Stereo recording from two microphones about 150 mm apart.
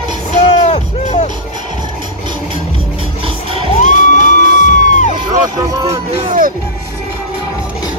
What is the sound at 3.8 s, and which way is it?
Crowd, 50° left (ahead or behind).